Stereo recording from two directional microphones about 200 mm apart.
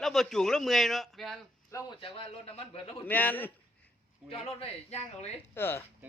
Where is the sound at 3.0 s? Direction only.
10° left (ahead or behind).